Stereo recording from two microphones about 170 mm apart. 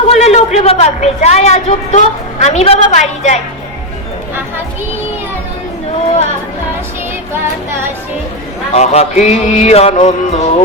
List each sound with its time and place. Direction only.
0.1 s a woman's voice: 40° left (ahead or behind)
8.7 s a woman's voice: 40° left (ahead or behind)